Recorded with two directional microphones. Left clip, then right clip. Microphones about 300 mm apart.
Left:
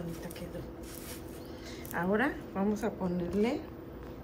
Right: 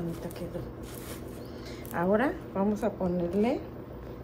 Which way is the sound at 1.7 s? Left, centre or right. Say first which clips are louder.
Right 5 dB; centre.